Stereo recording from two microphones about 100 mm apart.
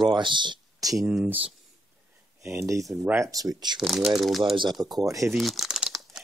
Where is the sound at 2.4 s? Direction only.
30° right (ahead or behind).